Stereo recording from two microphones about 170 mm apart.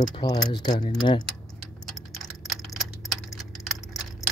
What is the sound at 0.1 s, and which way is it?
Speech, 25° left (ahead or behind).